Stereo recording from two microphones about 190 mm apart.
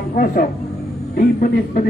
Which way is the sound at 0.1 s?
45° left (ahead or behind).